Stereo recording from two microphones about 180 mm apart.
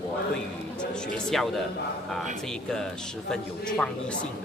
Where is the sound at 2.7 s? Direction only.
5° left (ahead or behind).